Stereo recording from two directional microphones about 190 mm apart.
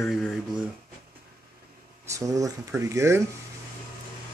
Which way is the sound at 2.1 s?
15° right (ahead or behind).